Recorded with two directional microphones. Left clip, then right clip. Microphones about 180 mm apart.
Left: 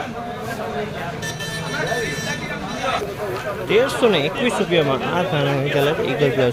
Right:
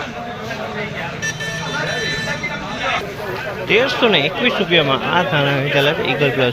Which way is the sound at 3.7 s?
5° left (ahead or behind).